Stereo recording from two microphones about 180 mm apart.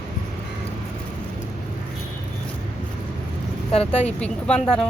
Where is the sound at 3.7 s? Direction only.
35° left (ahead or behind).